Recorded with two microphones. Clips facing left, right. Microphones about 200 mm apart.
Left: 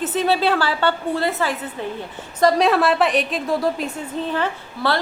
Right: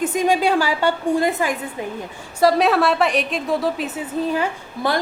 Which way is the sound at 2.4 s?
Centre (ahead or behind).